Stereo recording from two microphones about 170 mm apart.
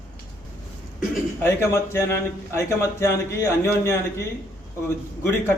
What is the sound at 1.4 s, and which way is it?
A man's voice, 15° left (ahead or behind).